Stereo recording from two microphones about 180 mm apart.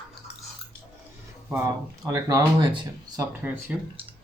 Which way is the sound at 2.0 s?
20° right (ahead or behind).